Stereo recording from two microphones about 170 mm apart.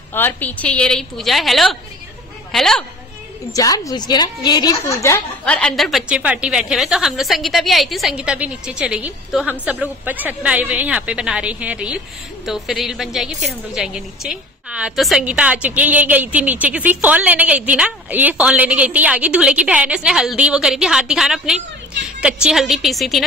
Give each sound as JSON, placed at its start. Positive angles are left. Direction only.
{"t": 0.1, "sound": "a woman's voice", "side_deg": 10}
{"t": 3.5, "sound": "a woman's voice", "side_deg": 20}